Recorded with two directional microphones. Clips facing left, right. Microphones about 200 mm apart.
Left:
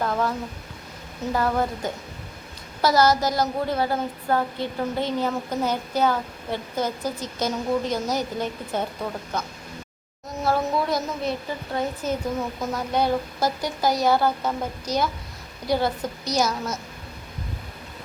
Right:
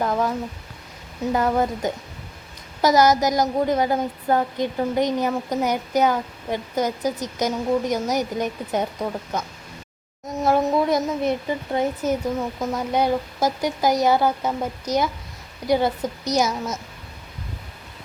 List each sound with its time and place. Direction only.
0.0 s a woman's voice: 15° right (ahead or behind)
10.4 s a woman's voice: 20° right (ahead or behind)